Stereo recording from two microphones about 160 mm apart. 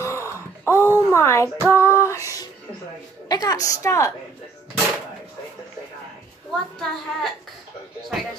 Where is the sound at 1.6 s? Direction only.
15° right (ahead or behind).